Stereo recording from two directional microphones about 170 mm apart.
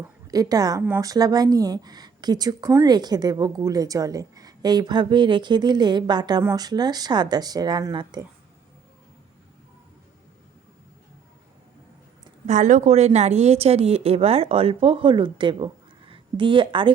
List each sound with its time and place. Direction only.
0.3 s speech: 20° right (ahead or behind)
12.5 s speech: 45° right (ahead or behind); by 16.9 s 30° right (ahead or behind)